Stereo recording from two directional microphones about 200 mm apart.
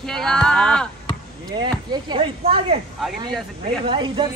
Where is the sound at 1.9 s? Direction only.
25° right (ahead or behind).